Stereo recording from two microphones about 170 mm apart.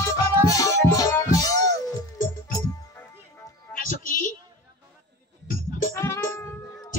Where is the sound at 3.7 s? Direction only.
50° left (ahead or behind).